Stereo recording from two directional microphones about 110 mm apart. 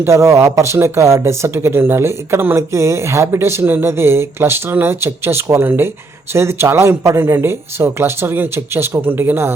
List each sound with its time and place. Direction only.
0.0 s speech: 25° right (ahead or behind)